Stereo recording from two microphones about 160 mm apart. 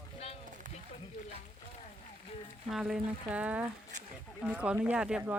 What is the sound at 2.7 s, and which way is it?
Speech, 5° right (ahead or behind).